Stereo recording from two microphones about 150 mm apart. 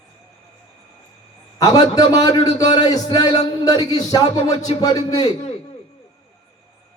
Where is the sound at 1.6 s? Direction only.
25° left (ahead or behind).